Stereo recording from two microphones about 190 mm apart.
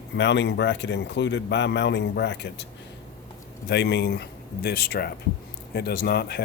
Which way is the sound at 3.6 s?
60° left (ahead or behind).